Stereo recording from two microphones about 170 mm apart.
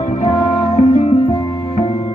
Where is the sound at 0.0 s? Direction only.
40° left (ahead or behind).